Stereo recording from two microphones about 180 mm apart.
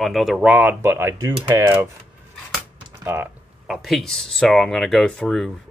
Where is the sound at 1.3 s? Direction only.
25° right (ahead or behind).